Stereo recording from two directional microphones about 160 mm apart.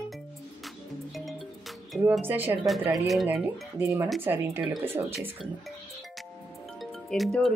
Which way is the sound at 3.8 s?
15° right (ahead or behind).